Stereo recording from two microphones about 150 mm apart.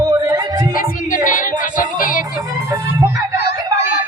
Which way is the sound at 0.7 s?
70° left (ahead or behind).